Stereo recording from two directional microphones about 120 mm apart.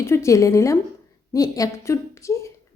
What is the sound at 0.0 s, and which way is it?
A woman's voice, 25° left (ahead or behind).